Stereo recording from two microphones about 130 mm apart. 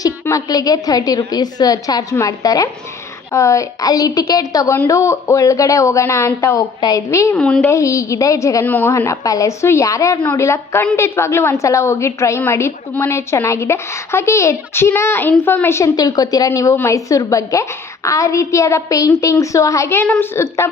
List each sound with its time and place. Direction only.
0.0 s a woman's voice: 25° left (ahead or behind)
7.3 s speech: 5° left (ahead or behind)
7.7 s a woman's voice: 25° left (ahead or behind)